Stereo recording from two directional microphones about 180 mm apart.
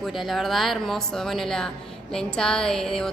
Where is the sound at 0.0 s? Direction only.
Centre (ahead or behind).